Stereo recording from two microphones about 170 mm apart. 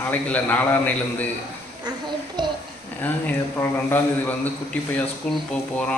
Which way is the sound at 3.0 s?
10° left (ahead or behind).